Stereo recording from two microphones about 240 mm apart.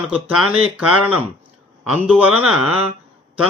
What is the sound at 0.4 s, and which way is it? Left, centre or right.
Speech, right.